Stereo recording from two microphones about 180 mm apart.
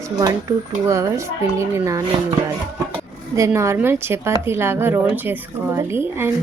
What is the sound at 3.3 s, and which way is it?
A woman's voice, 15° right (ahead or behind).